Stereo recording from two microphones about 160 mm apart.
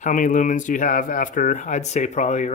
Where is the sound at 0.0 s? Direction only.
50° left (ahead or behind).